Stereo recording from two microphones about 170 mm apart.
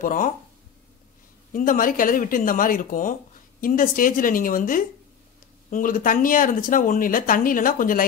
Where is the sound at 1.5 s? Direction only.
55° left (ahead or behind).